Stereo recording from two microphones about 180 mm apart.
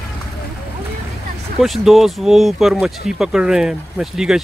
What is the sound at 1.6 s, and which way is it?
Speech, centre (ahead or behind).